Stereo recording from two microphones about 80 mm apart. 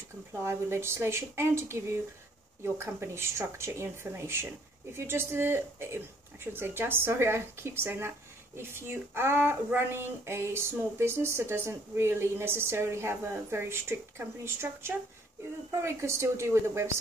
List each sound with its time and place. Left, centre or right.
0.3 s speech: right